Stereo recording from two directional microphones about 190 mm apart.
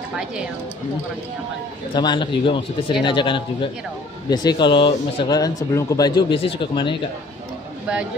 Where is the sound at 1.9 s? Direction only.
25° left (ahead or behind).